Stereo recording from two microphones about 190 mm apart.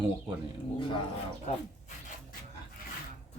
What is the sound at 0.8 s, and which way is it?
Speech, 25° left (ahead or behind).